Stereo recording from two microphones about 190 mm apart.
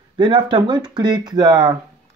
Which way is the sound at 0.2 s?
25° right (ahead or behind).